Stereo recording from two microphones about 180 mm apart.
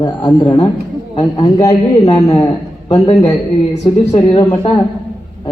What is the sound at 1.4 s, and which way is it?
Speech, 35° left (ahead or behind).